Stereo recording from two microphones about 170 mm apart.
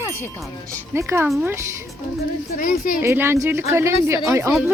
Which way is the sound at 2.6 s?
55° left (ahead or behind).